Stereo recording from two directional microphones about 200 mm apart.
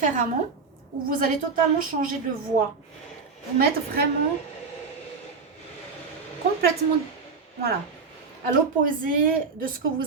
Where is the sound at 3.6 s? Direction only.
50° right (ahead or behind).